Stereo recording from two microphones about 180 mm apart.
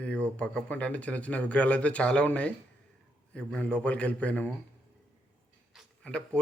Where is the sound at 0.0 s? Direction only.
5° left (ahead or behind).